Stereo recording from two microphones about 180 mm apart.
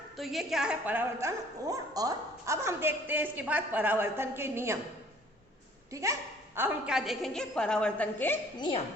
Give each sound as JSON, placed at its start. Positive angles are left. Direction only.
{"t": 0.2, "sound": "a woman's voice", "side_deg": 0}
{"t": 1.6, "sound": "a woman's voice", "side_deg": -20}
{"t": 5.9, "sound": "a woman's voice", "side_deg": -15}
{"t": 6.6, "sound": "a woman's voice", "side_deg": -5}
{"t": 8.5, "sound": "a woman's voice", "side_deg": 25}